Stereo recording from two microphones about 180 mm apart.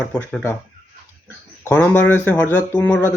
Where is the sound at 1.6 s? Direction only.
10° left (ahead or behind).